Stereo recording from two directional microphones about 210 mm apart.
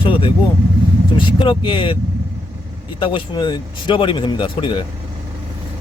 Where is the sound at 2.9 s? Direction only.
25° left (ahead or behind).